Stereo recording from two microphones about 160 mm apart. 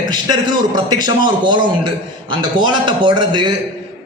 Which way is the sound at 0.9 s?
25° right (ahead or behind).